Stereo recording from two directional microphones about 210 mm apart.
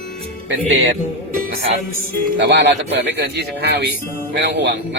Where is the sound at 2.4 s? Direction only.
55° right (ahead or behind).